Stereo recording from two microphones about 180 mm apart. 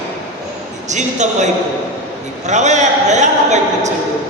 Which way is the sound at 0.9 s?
40° right (ahead or behind).